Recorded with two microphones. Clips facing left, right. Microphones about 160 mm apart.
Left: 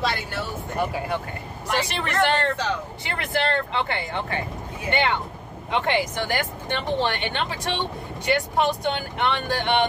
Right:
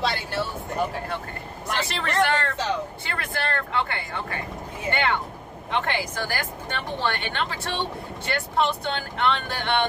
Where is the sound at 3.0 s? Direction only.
20° left (ahead or behind).